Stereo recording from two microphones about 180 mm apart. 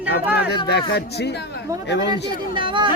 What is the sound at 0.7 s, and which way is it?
Speech, 65° left (ahead or behind).